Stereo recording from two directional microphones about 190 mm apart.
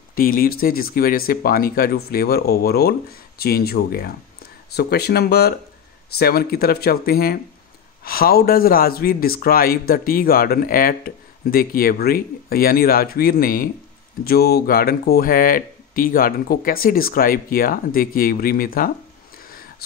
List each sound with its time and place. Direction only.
0.1 s a man's voice: 50° left (ahead or behind)